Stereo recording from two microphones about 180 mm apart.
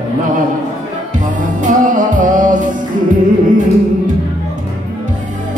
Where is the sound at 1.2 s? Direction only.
45° right (ahead or behind).